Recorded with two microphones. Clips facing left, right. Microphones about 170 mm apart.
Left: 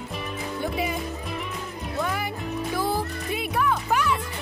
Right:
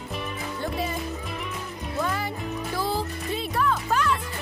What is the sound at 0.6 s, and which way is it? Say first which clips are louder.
Speech: left 2 dB; 10° left (ahead or behind).